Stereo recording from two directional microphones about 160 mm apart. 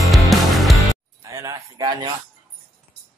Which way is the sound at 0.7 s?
20° right (ahead or behind).